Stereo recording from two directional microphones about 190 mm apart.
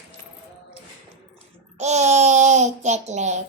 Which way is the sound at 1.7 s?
35° right (ahead or behind).